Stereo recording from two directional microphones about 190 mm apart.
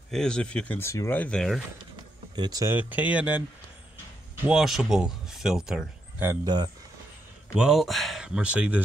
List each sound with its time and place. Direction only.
0.1 s speech: 5° left (ahead or behind)
2.3 s speech: 20° right (ahead or behind)
6.4 s speech: 20° right (ahead or behind)
7.5 s speech: 5° right (ahead or behind)